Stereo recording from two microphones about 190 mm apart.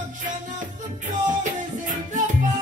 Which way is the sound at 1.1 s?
40° right (ahead or behind).